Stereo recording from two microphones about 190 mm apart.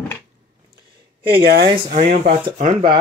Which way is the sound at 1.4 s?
55° right (ahead or behind).